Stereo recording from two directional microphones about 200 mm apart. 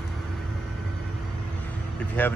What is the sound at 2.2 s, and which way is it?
Speech, 10° left (ahead or behind).